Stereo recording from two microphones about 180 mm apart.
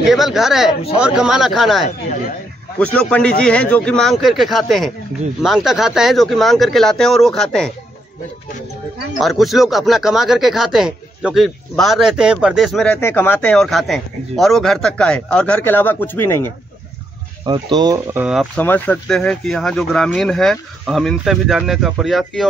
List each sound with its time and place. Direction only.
0.1 s speech: centre (ahead or behind)
9.2 s speech: centre (ahead or behind)
17.5 s speech: 25° right (ahead or behind)
18.2 s speech: 5° right (ahead or behind)
18.6 s speech: 10° left (ahead or behind)